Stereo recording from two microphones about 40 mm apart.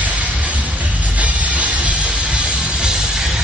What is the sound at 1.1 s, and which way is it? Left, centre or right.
Music, right.